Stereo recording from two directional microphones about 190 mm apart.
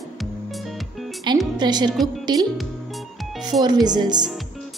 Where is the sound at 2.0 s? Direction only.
20° right (ahead or behind).